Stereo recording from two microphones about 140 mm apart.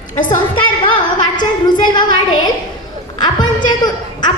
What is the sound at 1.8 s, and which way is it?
Speech, 35° left (ahead or behind).